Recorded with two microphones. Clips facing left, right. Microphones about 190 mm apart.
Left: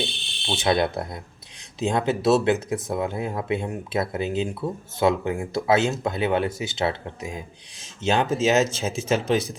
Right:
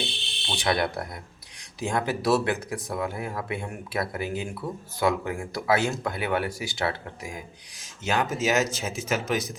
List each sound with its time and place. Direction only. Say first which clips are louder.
0.4 s speech: left 4 dB; 25° left (ahead or behind)